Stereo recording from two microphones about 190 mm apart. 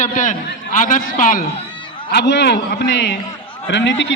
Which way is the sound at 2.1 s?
65° left (ahead or behind).